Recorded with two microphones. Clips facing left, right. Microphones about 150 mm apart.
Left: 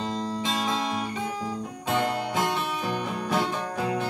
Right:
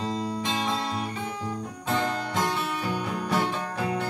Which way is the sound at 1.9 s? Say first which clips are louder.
Left 2 dB; 10° left (ahead or behind).